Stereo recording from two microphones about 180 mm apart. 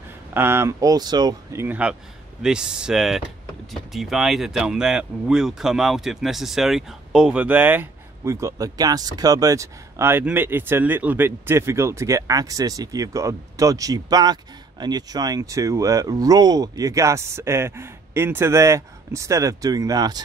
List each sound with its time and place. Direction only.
0.3 s speech: 15° right (ahead or behind)